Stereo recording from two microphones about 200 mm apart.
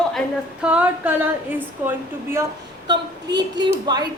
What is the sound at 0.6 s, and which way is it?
A woman's voice, 5° right (ahead or behind).